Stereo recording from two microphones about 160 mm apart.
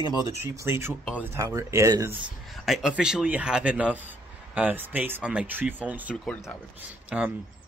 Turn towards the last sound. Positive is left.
turn(degrees=-10)  # may be behind; listen again after turning